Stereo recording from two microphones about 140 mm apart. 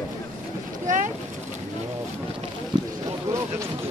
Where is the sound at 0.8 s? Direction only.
65° right (ahead or behind).